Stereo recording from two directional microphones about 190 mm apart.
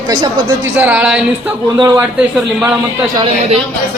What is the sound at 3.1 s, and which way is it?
Speech, 30° right (ahead or behind).